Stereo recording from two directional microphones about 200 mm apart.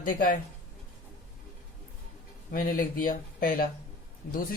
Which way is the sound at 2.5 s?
45° left (ahead or behind).